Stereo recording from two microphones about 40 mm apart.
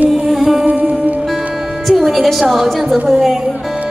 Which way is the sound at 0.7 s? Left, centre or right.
Right.